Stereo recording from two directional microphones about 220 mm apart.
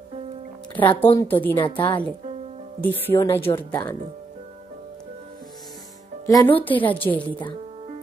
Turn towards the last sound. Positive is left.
turn(degrees=5)  # may be behind; listen again after turning